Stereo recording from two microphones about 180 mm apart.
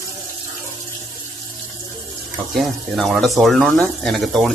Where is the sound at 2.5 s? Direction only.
Centre (ahead or behind).